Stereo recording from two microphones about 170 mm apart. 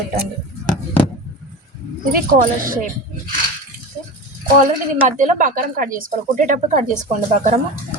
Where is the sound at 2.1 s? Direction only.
60° right (ahead or behind).